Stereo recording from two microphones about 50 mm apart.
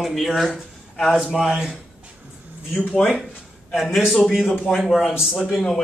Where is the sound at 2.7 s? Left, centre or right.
Left.